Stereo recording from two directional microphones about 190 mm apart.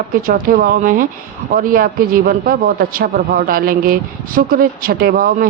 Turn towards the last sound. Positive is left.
turn(degrees=-50)  # may be behind; listen again after turning